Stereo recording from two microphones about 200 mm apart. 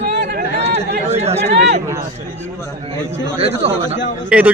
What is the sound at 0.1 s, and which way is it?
Chatter, 50° right (ahead or behind).